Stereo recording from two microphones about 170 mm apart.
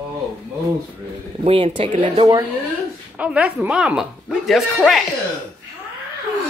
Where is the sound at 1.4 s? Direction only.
30° right (ahead or behind).